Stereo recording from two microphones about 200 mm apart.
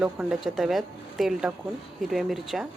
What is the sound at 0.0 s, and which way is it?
Speech, 5° right (ahead or behind).